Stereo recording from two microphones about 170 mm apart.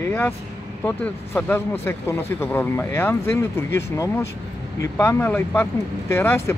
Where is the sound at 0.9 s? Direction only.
10° left (ahead or behind).